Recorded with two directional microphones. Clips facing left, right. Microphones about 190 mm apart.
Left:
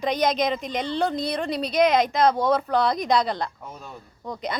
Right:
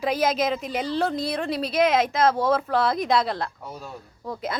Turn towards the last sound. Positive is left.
turn(degrees=0)  # may be behind; listen again after turning